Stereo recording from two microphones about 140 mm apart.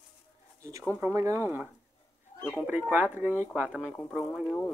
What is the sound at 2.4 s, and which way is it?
Speech, 15° left (ahead or behind).